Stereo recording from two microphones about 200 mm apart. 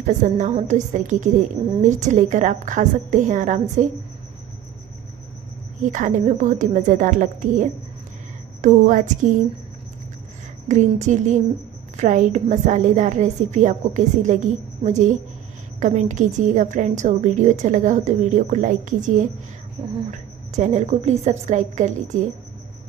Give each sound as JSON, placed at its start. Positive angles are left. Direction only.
{"t": 0.0, "sound": "a woman's voice", "side_deg": -35}
{"t": 5.8, "sound": "a woman's voice", "side_deg": -40}
{"t": 10.7, "sound": "a woman's voice", "side_deg": -35}